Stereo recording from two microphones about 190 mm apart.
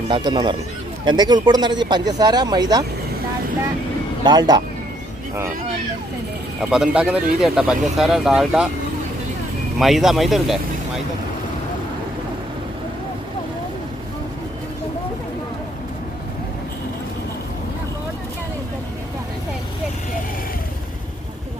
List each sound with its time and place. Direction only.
0.1 s speech: 25° right (ahead or behind)
4.2 s speech: 25° right (ahead or behind)
6.6 s speech: 5° right (ahead or behind)
9.7 s speech: centre (ahead or behind)